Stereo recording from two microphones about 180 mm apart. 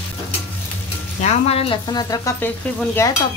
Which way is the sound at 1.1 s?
35° left (ahead or behind).